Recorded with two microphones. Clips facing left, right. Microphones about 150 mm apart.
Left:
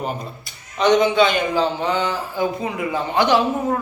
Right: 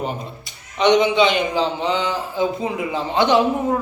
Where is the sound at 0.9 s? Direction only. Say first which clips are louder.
Even; 20° right (ahead or behind).